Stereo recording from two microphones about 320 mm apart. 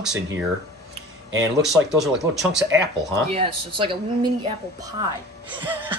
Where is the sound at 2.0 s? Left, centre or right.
Centre.